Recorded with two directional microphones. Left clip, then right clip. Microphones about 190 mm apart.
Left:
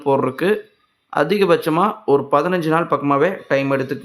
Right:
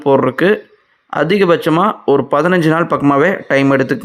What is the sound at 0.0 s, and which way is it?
A man's voice, 25° right (ahead or behind).